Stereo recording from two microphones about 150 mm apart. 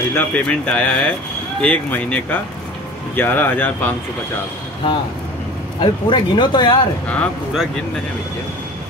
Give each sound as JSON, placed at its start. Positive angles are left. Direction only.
{"t": 0.1, "sound": "speech", "side_deg": 10}
{"t": 5.8, "sound": "speech", "side_deg": 35}
{"t": 7.1, "sound": "speech", "side_deg": 10}